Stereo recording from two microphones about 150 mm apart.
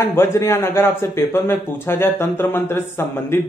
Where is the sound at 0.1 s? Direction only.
20° left (ahead or behind).